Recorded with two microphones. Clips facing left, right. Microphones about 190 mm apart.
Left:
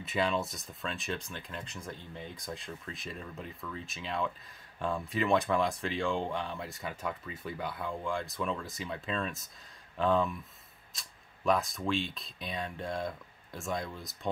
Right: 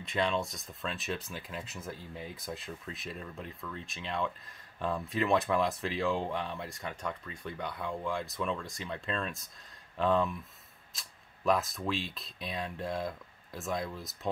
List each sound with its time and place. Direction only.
0.0 s speech: centre (ahead or behind)